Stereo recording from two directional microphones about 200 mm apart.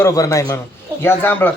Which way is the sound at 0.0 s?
15° left (ahead or behind).